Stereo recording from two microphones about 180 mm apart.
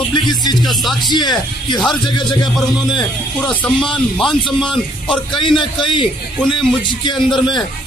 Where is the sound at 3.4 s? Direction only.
5° left (ahead or behind).